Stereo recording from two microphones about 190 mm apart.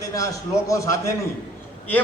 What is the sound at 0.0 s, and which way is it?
A man's voice, 15° left (ahead or behind).